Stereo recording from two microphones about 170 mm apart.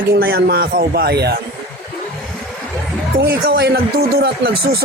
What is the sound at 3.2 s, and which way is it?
Speech, 70° right (ahead or behind).